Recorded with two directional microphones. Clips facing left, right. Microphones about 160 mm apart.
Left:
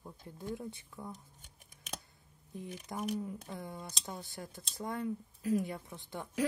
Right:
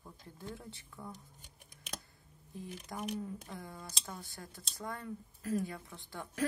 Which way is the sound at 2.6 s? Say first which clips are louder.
Left 2 dB; 20° left (ahead or behind).